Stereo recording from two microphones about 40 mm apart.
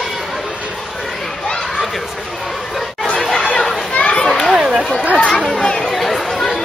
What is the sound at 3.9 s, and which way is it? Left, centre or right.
Children playing, left.